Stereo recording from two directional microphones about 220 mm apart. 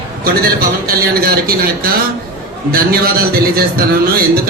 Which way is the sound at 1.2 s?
45° right (ahead or behind).